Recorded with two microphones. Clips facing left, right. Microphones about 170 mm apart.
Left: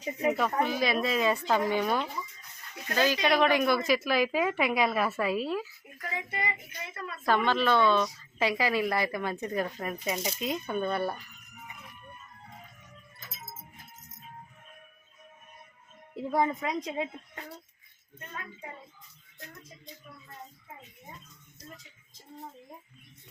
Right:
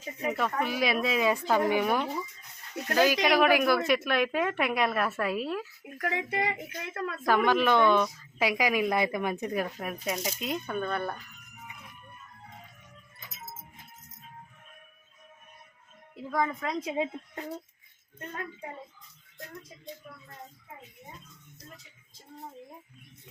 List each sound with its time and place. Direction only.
0.0 s speech: 20° left (ahead or behind)
0.3 s a woman's voice: centre (ahead or behind)
6.0 s speech: 70° right (ahead or behind); by 7.2 s 90° right
7.3 s a woman's voice: 10° right (ahead or behind); by 11.2 s 5° left (ahead or behind)
16.1 s speech: 25° left (ahead or behind)
16.9 s a woman's voice: 10° right (ahead or behind)